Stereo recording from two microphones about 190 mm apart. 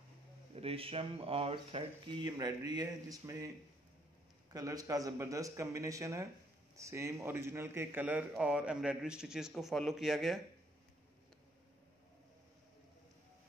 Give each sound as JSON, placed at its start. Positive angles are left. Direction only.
{"t": 0.6, "sound": "a man's voice", "side_deg": -30}